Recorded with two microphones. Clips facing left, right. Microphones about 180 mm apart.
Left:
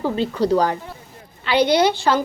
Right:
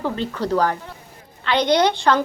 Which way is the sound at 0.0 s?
10° left (ahead or behind).